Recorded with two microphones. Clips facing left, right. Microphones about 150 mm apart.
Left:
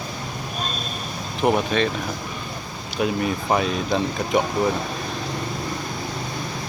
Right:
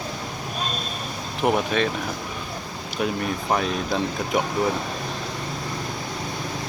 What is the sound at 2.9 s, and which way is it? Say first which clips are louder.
Speech: left 3 dB; centre (ahead or behind).